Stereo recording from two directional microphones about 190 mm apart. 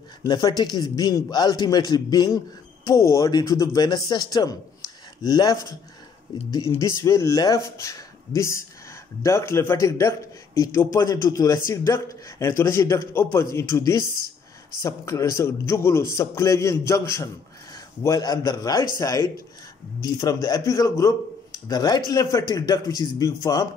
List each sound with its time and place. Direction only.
0.2 s a man's voice: 20° left (ahead or behind)
6.8 s a man's voice: 15° left (ahead or behind)